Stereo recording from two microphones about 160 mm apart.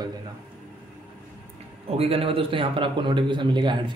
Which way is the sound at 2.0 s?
35° right (ahead or behind).